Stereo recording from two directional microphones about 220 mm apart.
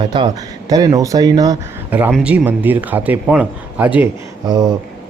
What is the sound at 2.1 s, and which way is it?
Speech, 5° right (ahead or behind).